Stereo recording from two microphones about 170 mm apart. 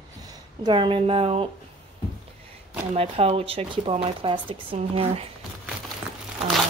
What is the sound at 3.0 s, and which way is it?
Speech, 35° right (ahead or behind).